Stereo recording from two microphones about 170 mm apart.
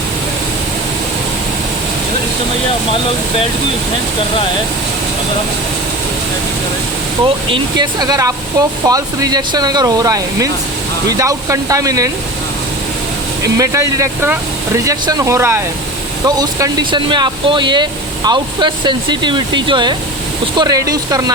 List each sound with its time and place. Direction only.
7.5 s speech: 25° right (ahead or behind)
13.4 s speech: 20° right (ahead or behind)